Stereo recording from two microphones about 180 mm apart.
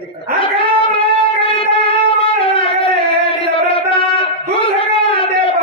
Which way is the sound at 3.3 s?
30° left (ahead or behind).